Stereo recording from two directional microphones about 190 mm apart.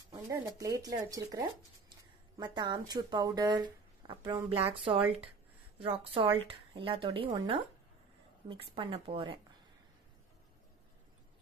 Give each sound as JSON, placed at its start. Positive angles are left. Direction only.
{"t": 0.1, "sound": "speech", "side_deg": -20}